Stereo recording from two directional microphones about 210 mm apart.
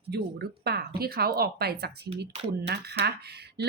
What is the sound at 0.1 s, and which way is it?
Speech, 50° right (ahead or behind).